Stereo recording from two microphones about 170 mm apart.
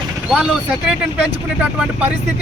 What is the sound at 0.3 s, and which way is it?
Speech, 5° right (ahead or behind).